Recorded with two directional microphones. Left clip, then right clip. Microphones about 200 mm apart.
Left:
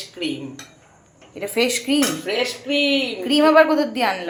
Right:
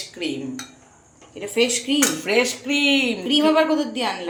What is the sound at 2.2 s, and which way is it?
Speech, 60° right (ahead or behind).